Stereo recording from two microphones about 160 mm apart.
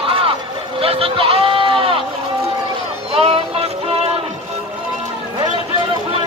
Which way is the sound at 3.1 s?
35° right (ahead or behind).